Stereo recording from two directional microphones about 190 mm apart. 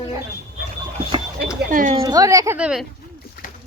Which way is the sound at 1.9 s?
20° right (ahead or behind).